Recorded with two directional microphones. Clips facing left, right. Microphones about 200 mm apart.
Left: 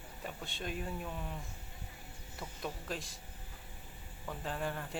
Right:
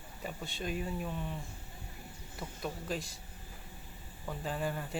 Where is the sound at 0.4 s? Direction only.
Centre (ahead or behind).